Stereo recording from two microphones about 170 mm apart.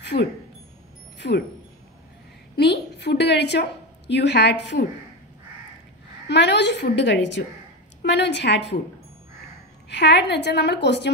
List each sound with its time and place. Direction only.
0.0 s speech: 90° left
1.2 s speech: 65° left (ahead or behind)
2.5 s a woman's voice: 80° left
6.2 s a woman's voice: 90° left
9.8 s a woman's voice: 90° left